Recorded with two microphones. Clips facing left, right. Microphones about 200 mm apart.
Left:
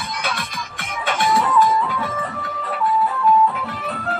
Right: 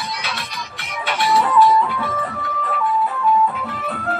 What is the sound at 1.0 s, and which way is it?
Music, 50° left (ahead or behind).